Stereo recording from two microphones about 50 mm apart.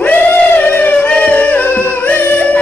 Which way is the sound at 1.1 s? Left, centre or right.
Left.